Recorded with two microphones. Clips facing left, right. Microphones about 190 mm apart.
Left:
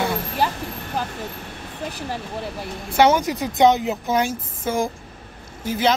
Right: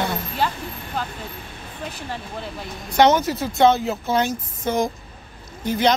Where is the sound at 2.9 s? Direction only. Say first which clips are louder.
Even; 10° left (ahead or behind).